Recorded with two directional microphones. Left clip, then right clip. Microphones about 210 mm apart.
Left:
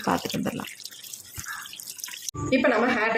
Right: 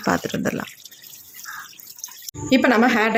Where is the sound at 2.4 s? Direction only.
50° right (ahead or behind).